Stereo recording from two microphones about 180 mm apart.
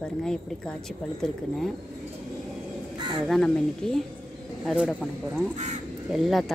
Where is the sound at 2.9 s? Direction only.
25° right (ahead or behind).